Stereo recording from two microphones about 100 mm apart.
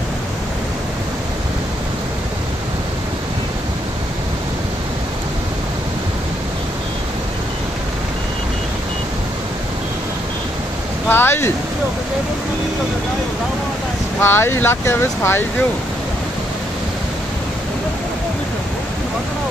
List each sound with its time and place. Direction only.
11.1 s speech: 20° left (ahead or behind)
14.2 s speech: 25° left (ahead or behind)